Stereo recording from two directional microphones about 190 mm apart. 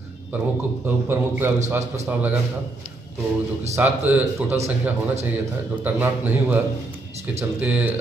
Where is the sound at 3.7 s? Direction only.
10° right (ahead or behind).